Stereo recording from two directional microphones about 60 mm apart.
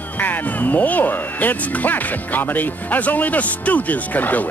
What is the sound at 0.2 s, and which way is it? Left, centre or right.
Speech, left.